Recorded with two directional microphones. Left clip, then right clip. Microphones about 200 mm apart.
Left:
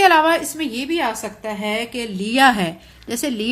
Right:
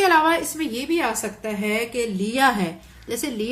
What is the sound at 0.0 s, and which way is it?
A woman's voice, 45° left (ahead or behind).